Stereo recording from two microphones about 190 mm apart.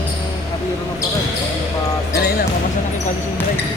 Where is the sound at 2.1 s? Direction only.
55° left (ahead or behind).